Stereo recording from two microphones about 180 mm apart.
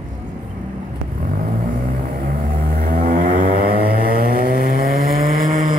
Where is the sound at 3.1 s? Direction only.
45° right (ahead or behind).